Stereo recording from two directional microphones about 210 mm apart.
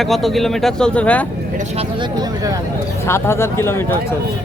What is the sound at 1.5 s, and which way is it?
Speech, 30° right (ahead or behind).